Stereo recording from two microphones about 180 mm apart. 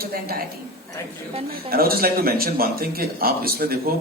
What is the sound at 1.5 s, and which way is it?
Speech, 55° right (ahead or behind).